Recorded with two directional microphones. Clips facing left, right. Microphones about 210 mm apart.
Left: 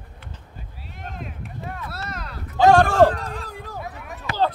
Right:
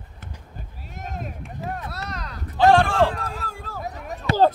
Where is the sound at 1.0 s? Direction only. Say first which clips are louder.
Right 2 dB; 45° right (ahead or behind).